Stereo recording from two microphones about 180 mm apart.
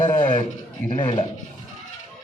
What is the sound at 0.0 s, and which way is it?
Speech, 25° left (ahead or behind).